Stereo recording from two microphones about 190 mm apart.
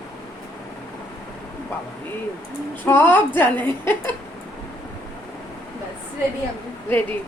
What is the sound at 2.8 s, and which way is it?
A woman's voice, 10° left (ahead or behind).